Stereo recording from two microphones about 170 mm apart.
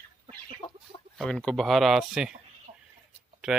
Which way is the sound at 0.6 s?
30° left (ahead or behind).